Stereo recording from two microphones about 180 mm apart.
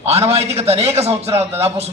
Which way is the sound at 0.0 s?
35° right (ahead or behind).